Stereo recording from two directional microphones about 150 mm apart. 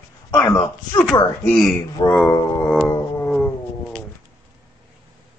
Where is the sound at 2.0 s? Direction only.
35° left (ahead or behind).